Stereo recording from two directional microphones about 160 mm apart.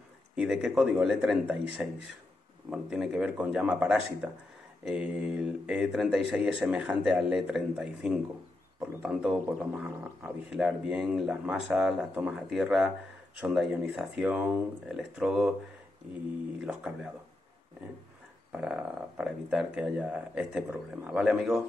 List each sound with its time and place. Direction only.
0.4 s speech: 5° right (ahead or behind)
16.6 s speech: 5° right (ahead or behind)
18.5 s speech: 5° right (ahead or behind)